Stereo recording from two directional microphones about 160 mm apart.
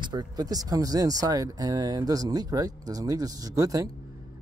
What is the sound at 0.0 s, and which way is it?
Speech, 25° right (ahead or behind).